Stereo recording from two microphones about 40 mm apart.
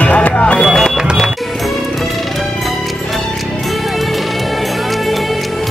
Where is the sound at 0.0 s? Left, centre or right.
Left.